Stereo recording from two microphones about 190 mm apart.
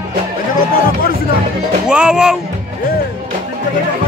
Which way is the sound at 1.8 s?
5° right (ahead or behind).